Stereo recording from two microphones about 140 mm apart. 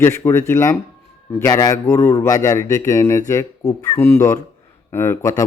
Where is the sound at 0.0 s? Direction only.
20° left (ahead or behind).